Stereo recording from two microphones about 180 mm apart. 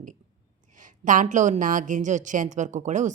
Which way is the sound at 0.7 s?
45° right (ahead or behind).